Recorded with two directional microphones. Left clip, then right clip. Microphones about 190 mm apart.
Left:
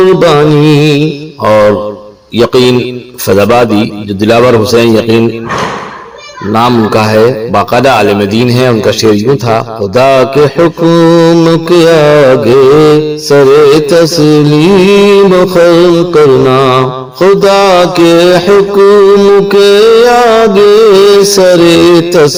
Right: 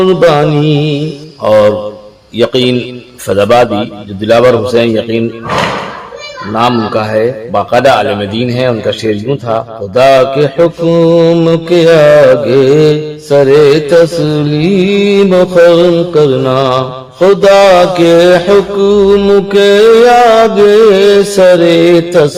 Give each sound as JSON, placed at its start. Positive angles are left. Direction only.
{"t": 0.2, "sound": "mantra", "side_deg": 35}
{"t": 6.5, "sound": "mantra", "side_deg": 40}